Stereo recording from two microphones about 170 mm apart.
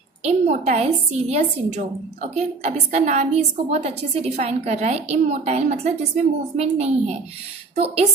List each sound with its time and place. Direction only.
0.2 s a woman's voice: 40° right (ahead or behind)